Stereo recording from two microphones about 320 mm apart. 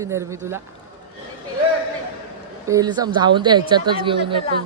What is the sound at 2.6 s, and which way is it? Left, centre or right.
Speech, centre.